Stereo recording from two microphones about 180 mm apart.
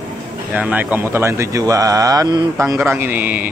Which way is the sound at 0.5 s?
10° right (ahead or behind).